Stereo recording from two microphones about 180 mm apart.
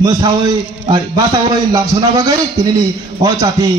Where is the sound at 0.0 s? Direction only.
20° right (ahead or behind).